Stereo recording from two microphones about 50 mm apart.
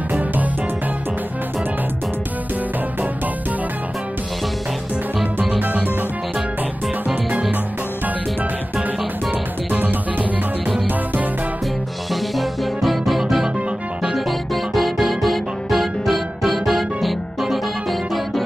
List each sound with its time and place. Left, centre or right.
0.1 s music: right
5.6 s music: right
9.7 s music: right
12.1 s music: centre